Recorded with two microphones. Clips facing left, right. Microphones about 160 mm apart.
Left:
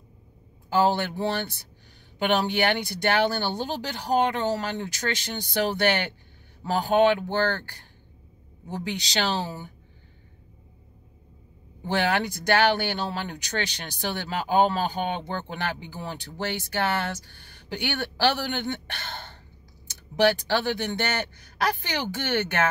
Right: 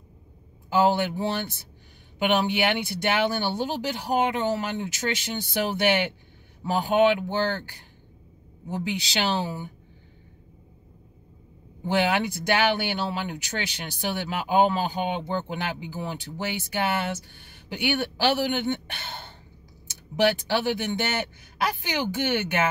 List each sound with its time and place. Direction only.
0.7 s speech: 10° right (ahead or behind)
11.8 s speech: 10° right (ahead or behind)
17.6 s speech: 10° right (ahead or behind)
20.2 s speech: 10° right (ahead or behind)